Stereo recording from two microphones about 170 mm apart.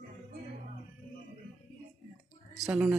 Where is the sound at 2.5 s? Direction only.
5° right (ahead or behind).